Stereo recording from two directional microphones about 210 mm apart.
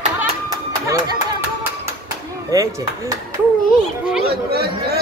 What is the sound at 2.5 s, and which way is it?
Speech, 15° right (ahead or behind).